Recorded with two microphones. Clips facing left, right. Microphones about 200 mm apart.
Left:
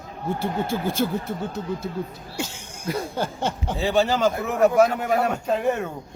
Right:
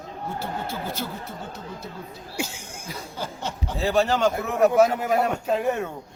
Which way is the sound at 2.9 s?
55° left (ahead or behind).